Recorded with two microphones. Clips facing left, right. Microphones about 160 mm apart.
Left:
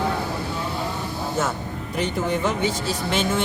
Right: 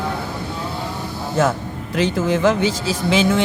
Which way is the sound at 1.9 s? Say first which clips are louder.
Right 5 dB; 90° right.